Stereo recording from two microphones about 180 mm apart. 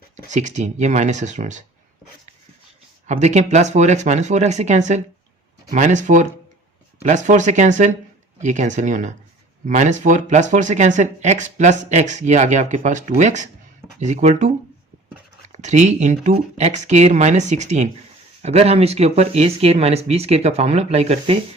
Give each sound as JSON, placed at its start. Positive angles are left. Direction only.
{"t": 0.3, "sound": "speech", "side_deg": -40}
{"t": 3.1, "sound": "speech", "side_deg": -40}
{"t": 15.5, "sound": "speech", "side_deg": -40}